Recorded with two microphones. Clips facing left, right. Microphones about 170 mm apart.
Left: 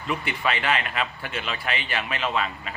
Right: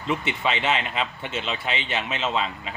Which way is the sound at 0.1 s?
20° right (ahead or behind).